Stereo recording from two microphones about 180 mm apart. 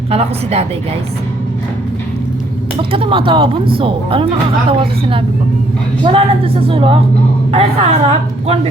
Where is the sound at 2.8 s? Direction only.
30° right (ahead or behind).